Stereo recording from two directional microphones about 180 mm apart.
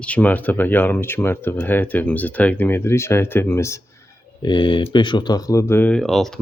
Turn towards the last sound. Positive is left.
turn(degrees=0)  # may be behind; listen again after turning